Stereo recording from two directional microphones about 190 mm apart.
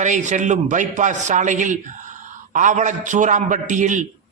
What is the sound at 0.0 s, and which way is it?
A man's voice, 40° right (ahead or behind).